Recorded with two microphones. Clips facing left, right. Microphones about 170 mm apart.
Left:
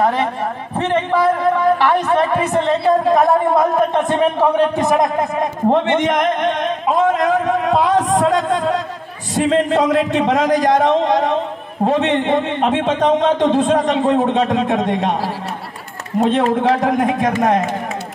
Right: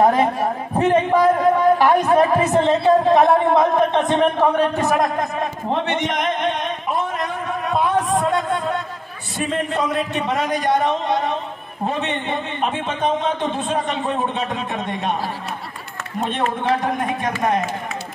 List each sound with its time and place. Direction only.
0.7 s a man's voice: 10° right (ahead or behind); by 5.1 s 15° left (ahead or behind)
5.7 s a man's voice: 50° left (ahead or behind)
6.5 s a sound: 90° left
9.3 s a man's voice: 90° left
16.2 s a man's voice: 90° left